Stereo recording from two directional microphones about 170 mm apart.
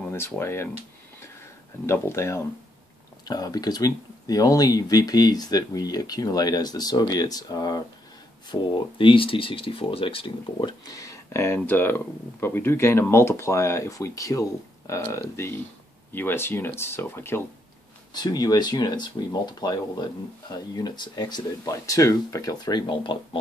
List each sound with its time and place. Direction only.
0.1 s speech: 15° left (ahead or behind)
1.9 s speech: 15° left (ahead or behind)